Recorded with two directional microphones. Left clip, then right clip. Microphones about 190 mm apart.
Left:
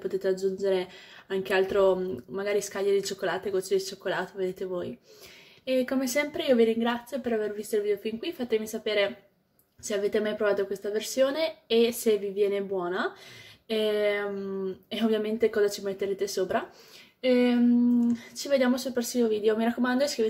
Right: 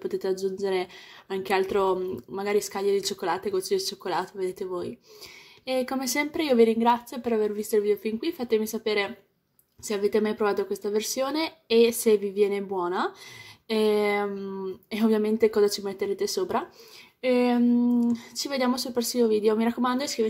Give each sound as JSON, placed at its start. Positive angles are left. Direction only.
{"t": 0.1, "sound": "speech", "side_deg": -30}
{"t": 18.0, "sound": "speech", "side_deg": -35}